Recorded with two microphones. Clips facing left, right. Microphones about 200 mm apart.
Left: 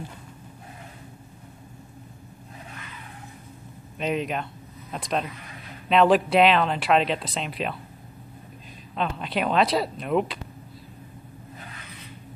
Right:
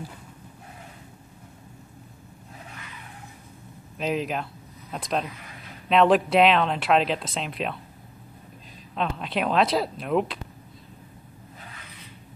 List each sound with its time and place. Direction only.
4.0 s speech: centre (ahead or behind)
8.9 s speech: centre (ahead or behind)